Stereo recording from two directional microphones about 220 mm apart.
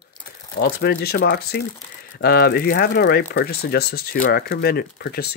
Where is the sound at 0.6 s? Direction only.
45° left (ahead or behind).